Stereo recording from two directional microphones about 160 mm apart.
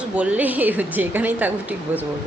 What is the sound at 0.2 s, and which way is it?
A woman's voice, 10° right (ahead or behind).